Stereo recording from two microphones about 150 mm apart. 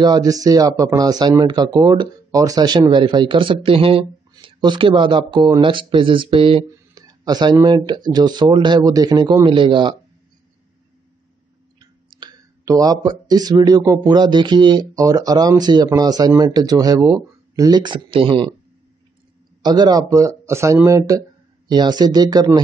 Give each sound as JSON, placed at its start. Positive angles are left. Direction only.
{"t": 0.0, "sound": "speech", "side_deg": -25}
{"t": 7.2, "sound": "speech", "side_deg": -25}
{"t": 12.1, "sound": "speech", "side_deg": -30}
{"t": 19.6, "sound": "speech", "side_deg": -30}